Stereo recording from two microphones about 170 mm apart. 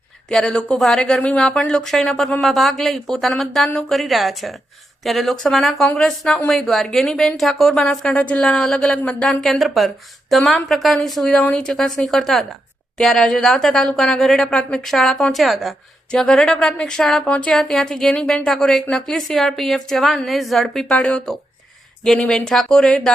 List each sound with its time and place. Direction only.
0.3 s speech: 5° left (ahead or behind)